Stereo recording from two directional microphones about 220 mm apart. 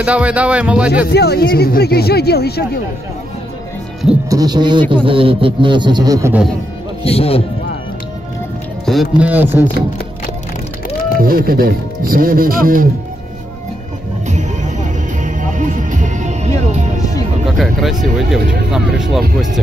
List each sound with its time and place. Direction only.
0.0 s speech: 5° right (ahead or behind)
1.0 s speech: 45° left (ahead or behind)
4.3 s a man's voice: 15° right (ahead or behind)
7.0 s speech: 25° left (ahead or behind)
8.8 s speech: centre (ahead or behind)
11.1 s speech: 40° right (ahead or behind)
14.2 s music: 35° right (ahead or behind)
17.5 s speech: centre (ahead or behind)